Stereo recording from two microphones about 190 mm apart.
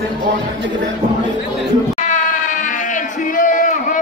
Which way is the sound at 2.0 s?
40° left (ahead or behind).